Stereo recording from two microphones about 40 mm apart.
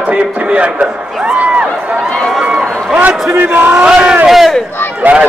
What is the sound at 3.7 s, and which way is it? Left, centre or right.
Speech, right.